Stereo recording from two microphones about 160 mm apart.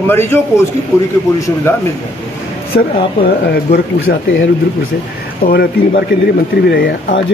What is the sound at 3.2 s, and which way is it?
Speech, 70° left (ahead or behind).